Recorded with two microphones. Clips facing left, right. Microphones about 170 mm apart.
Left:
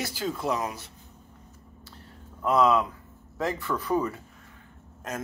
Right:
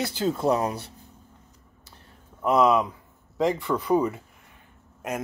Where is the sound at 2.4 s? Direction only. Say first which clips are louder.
Right 2 dB; 20° right (ahead or behind).